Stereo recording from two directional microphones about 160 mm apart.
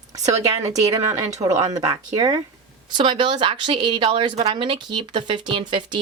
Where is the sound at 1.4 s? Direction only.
30° right (ahead or behind).